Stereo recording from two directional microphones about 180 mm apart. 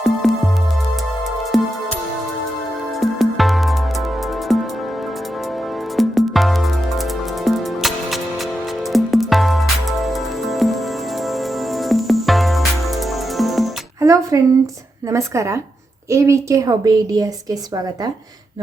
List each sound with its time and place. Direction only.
0.0 s music: centre (ahead or behind)
1.5 s music: centre (ahead or behind)
3.0 s music: centre (ahead or behind)
6.0 s music: centre (ahead or behind)
14.0 s music: 15° right (ahead or behind)
15.1 s a woman's voice: 15° right (ahead or behind)